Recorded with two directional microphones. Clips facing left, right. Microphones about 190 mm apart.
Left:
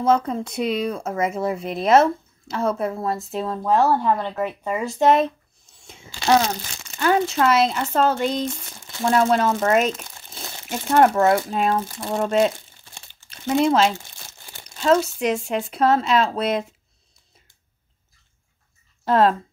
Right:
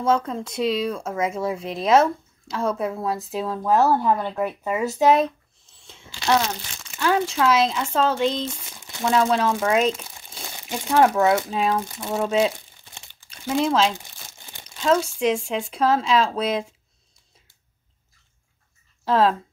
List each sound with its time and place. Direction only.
0.2 s speech: 5° left (ahead or behind)
6.3 s speech: 40° left (ahead or behind)
7.0 s speech: centre (ahead or behind)
10.3 s crumpling: centre (ahead or behind)
11.1 s speech: centre (ahead or behind)
12.9 s crumpling: 15° right (ahead or behind)
13.5 s speech: 5° left (ahead or behind)
19.0 s speech: centre (ahead or behind)